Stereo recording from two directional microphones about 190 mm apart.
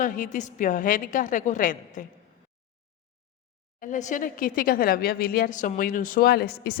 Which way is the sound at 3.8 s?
40° left (ahead or behind).